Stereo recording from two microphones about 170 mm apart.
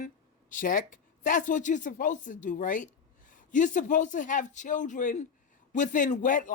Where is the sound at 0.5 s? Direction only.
55° left (ahead or behind).